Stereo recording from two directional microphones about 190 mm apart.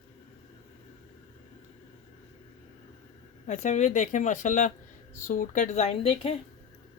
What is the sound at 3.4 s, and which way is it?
A woman's voice, 40° left (ahead or behind).